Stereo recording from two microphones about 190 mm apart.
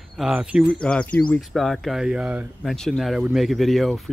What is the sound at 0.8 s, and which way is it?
Speech, 5° left (ahead or behind).